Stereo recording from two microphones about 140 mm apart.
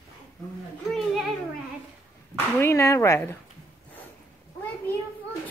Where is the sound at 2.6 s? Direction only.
20° left (ahead or behind).